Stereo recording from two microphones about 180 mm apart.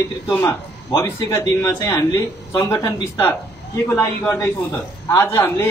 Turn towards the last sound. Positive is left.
turn(degrees=15)  # may be behind; listen again after turning